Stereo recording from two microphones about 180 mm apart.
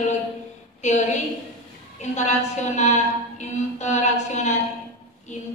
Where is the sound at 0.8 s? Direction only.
40° left (ahead or behind).